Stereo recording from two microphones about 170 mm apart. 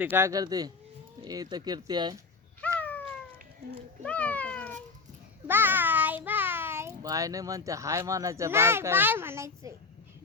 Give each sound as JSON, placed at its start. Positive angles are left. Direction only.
{"t": 0.0, "sound": "speech", "side_deg": -10}
{"t": 2.7, "sound": "cat", "side_deg": 10}
{"t": 4.0, "sound": "cat", "side_deg": 10}
{"t": 5.5, "sound": "a sound", "side_deg": -10}
{"t": 6.2, "sound": "a child's voice", "side_deg": -10}